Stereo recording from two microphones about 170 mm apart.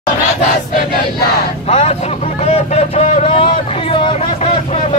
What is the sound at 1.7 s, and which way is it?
Speech, 40° left (ahead or behind).